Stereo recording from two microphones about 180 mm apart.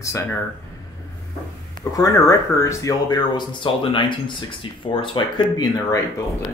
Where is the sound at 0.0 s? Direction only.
15° left (ahead or behind).